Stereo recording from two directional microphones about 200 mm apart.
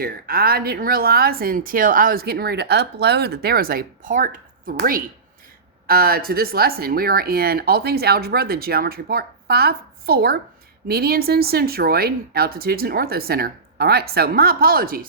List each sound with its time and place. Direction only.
0.0 s speech: 50° right (ahead or behind)